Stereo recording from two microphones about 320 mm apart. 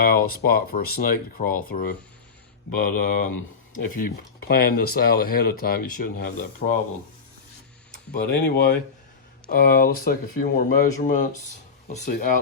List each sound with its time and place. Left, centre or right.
0.0 s speech: left
8.3 s speech: left